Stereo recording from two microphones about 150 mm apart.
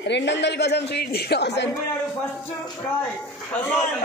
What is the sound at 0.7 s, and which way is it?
Speech, 90° left.